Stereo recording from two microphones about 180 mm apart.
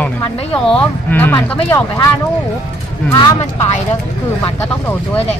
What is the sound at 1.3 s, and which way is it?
Speech, 20° left (ahead or behind).